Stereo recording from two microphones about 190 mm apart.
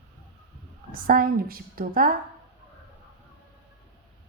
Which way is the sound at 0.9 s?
50° right (ahead or behind).